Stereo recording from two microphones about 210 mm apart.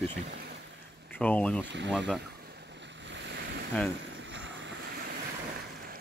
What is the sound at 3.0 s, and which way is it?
Waves, 55° right (ahead or behind).